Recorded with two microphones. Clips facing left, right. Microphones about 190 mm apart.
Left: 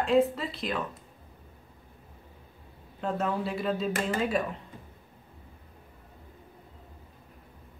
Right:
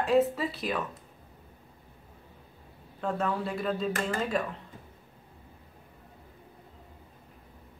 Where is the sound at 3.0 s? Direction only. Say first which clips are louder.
Even; centre (ahead or behind).